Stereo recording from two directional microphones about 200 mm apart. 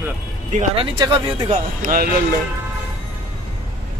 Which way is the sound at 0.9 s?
20° right (ahead or behind).